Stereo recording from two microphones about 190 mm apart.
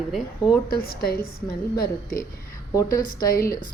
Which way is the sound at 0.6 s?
50° left (ahead or behind).